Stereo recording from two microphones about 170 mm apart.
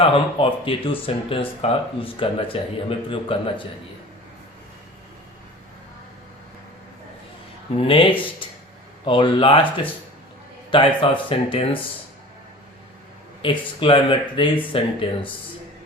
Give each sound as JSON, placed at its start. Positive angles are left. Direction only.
{"t": 0.0, "sound": "speech", "side_deg": 30}
{"t": 7.8, "sound": "speech", "side_deg": 30}
{"t": 13.4, "sound": "speech", "side_deg": 30}